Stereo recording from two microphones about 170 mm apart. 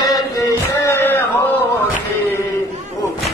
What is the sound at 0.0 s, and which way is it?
Chant, 20° left (ahead or behind).